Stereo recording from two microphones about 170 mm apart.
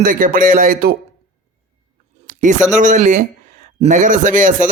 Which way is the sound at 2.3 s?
45° right (ahead or behind).